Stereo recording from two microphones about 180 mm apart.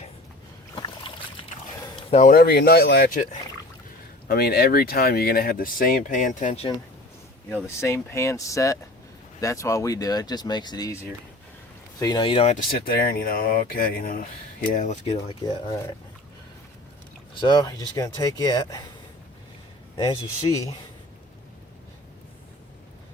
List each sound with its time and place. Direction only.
2.0 s a sound: 30° left (ahead or behind)
2.2 s speech: 60° left (ahead or behind)
4.3 s speech: 60° left (ahead or behind); by 6.7 s 40° left (ahead or behind)
7.5 s speech: 15° left (ahead or behind)
11.9 s speech: 20° left (ahead or behind)
12.8 s speech: 55° left (ahead or behind)
14.7 s speech: 40° left (ahead or behind)
17.4 s speech: 25° left (ahead or behind)
20.1 s speech: 20° left (ahead or behind)